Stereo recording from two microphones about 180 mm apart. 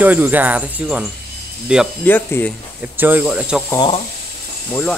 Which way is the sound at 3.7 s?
25° left (ahead or behind).